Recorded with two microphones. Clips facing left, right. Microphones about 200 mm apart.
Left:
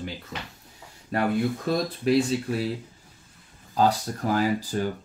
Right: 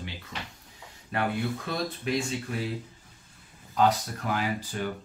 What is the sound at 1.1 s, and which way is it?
Speech, 40° left (ahead or behind).